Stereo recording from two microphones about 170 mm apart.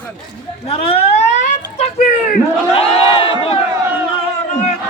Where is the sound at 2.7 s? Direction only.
35° left (ahead or behind).